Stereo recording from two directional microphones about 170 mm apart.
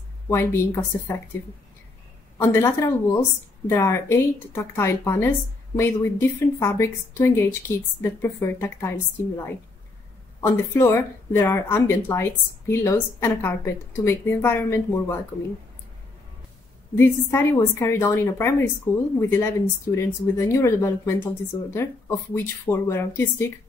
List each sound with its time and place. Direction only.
0.3 s speech: 15° left (ahead or behind)
2.3 s speech: 15° left (ahead or behind)
16.9 s speech: 15° left (ahead or behind)